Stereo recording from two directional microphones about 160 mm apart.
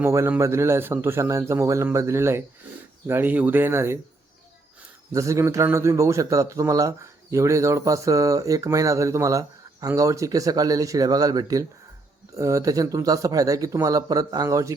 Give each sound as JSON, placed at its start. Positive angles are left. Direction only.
{"t": 0.0, "sound": "a man's voice", "side_deg": -15}
{"t": 5.1, "sound": "a man's voice", "side_deg": -20}